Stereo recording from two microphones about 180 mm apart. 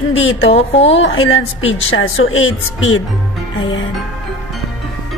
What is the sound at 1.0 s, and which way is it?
Speech, 90° left.